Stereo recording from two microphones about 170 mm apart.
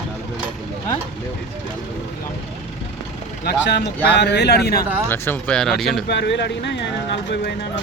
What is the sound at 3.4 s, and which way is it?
Speech, 85° left.